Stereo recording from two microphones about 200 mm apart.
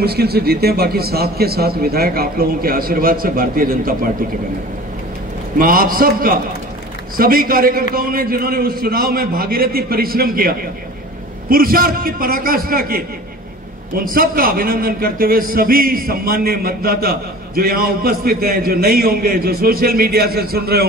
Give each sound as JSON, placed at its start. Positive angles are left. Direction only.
{"t": 0.0, "sound": "a man's voice", "side_deg": -50}
{"t": 5.6, "sound": "a man's voice", "side_deg": -45}